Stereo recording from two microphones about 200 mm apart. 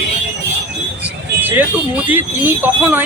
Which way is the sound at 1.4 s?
10° right (ahead or behind).